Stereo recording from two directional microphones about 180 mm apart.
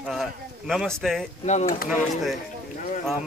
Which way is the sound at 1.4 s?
40° left (ahead or behind).